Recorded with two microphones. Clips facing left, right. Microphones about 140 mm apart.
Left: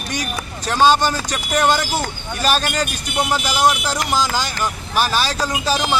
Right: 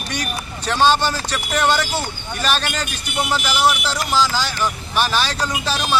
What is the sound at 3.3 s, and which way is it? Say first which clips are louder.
Speech: left 1 dB; 15° left (ahead or behind).